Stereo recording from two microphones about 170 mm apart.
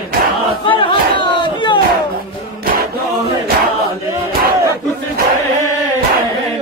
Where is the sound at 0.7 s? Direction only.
30° left (ahead or behind).